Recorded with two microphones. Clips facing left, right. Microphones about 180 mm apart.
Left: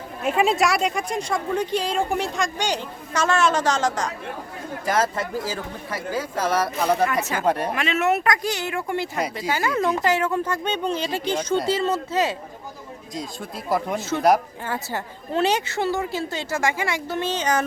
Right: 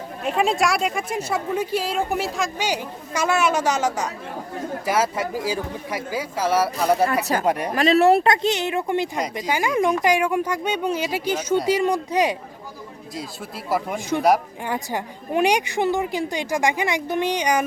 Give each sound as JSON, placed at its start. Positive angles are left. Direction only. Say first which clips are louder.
{"t": 0.2, "sound": "a woman's voice", "louder": "left 1 dB", "side_deg": 0}
{"t": 7.7, "sound": "a woman's voice", "louder": "right 6 dB", "side_deg": -35}
{"t": 13.1, "sound": "speech", "louder": "left 1 dB", "side_deg": -5}
{"t": 14.6, "sound": "a woman's voice", "louder": "right 2 dB", "side_deg": -15}